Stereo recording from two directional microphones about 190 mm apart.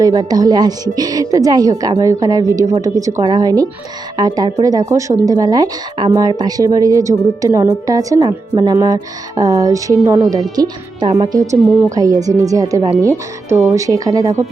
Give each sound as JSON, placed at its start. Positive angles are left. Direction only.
{"t": 0.0, "sound": "a woman's voice", "side_deg": -20}